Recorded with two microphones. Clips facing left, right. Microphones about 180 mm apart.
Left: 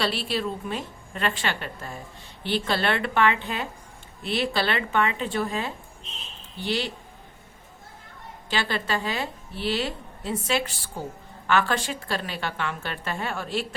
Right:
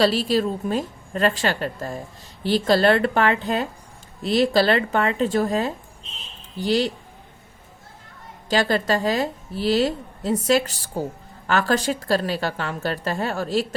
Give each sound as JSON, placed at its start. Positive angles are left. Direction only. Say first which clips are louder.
{"t": 0.0, "sound": "a woman's voice", "louder": "right 8 dB", "side_deg": -40}
{"t": 8.4, "sound": "a woman's voice", "louder": "right 7 dB", "side_deg": -40}